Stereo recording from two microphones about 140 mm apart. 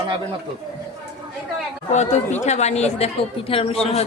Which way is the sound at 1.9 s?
55° left (ahead or behind).